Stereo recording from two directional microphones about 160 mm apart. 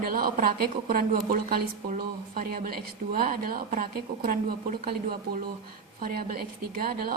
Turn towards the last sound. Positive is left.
turn(degrees=-65)  # may be behind; listen again after turning